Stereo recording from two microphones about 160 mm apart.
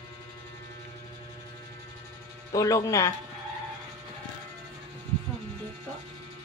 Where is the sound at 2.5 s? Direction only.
20° left (ahead or behind).